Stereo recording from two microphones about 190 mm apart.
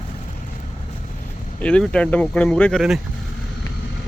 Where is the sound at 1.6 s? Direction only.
5° left (ahead or behind).